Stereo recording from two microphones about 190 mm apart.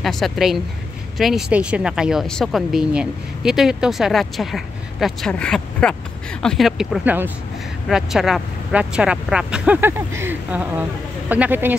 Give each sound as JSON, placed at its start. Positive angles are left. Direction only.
{"t": 0.0, "sound": "speech", "side_deg": 0}